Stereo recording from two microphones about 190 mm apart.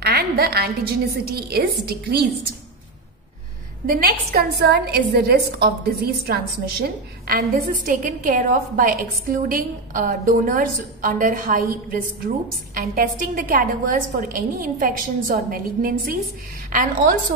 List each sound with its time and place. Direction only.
0.0 s a woman's voice: 55° right (ahead or behind)
3.8 s a woman's voice: 50° right (ahead or behind)